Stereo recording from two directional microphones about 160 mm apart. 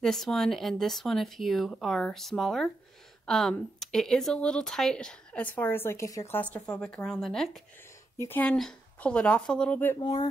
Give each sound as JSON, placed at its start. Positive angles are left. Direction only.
{"t": 0.0, "sound": "speech", "side_deg": 0}
{"t": 6.5, "sound": "speech", "side_deg": 5}
{"t": 9.9, "sound": "speech", "side_deg": 30}